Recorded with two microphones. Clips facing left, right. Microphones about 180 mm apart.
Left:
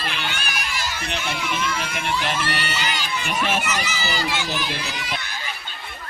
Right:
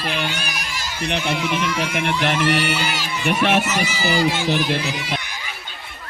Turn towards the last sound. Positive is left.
turn(degrees=-55)  # may be behind; listen again after turning